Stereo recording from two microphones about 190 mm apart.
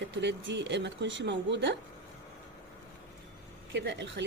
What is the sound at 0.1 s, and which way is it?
A woman's voice, 65° right (ahead or behind).